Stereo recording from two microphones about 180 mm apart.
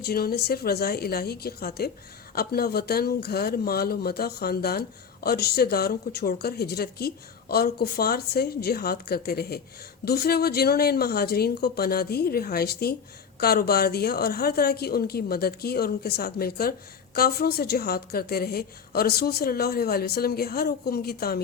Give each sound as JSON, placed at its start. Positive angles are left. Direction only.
{"t": 0.0, "sound": "speech", "side_deg": 60}